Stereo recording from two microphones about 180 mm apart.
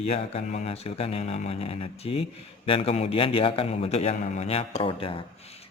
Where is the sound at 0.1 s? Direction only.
35° left (ahead or behind).